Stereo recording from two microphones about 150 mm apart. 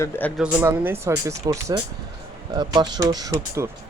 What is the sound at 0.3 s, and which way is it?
Speech, 10° right (ahead or behind).